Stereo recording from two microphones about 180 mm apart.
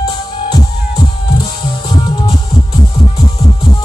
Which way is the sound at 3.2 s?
25° left (ahead or behind).